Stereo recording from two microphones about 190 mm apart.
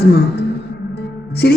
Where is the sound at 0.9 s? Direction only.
60° left (ahead or behind).